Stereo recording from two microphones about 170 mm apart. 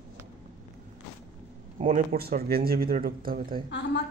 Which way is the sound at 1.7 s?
45° right (ahead or behind).